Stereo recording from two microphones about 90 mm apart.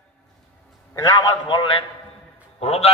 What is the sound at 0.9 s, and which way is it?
Speech, 40° left (ahead or behind).